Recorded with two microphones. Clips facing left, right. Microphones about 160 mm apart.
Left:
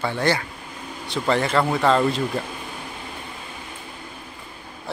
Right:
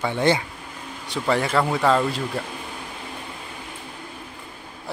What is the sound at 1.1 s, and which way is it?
Speech, 10° right (ahead or behind).